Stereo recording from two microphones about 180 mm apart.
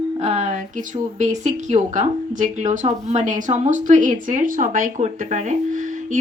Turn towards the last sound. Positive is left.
turn(degrees=-45)  # may be behind; listen again after turning